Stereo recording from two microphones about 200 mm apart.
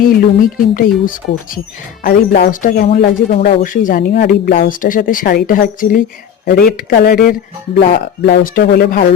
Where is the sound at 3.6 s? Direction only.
40° left (ahead or behind).